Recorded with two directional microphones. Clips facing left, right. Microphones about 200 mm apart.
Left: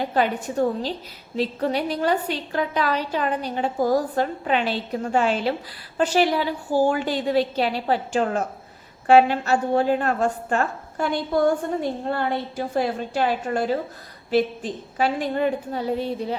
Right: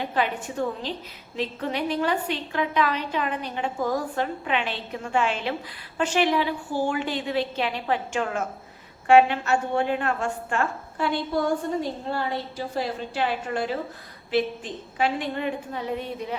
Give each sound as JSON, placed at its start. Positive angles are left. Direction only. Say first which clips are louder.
{"t": 0.1, "sound": "a woman's voice", "louder": "left 4 dB", "side_deg": 40}
{"t": 11.8, "sound": "a woman's voice", "louder": "left 3 dB", "side_deg": 55}